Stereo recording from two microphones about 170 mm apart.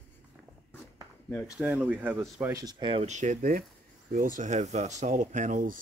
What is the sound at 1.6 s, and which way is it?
Speech, 5° right (ahead or behind).